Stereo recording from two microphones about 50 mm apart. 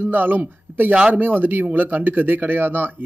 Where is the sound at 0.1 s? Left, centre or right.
Right.